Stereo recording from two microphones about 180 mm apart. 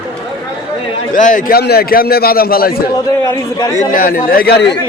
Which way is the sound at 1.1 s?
45° left (ahead or behind).